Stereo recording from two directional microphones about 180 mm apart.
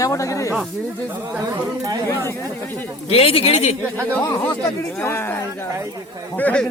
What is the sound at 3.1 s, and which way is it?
Speech, 35° left (ahead or behind).